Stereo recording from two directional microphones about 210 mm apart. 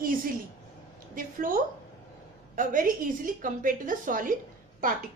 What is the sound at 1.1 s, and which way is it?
A woman's voice, 40° right (ahead or behind).